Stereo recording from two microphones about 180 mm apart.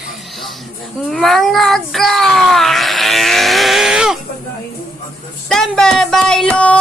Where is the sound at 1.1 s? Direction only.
Centre (ahead or behind).